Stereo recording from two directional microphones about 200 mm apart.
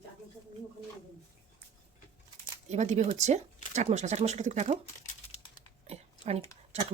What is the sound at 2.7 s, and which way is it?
Speech, 35° right (ahead or behind).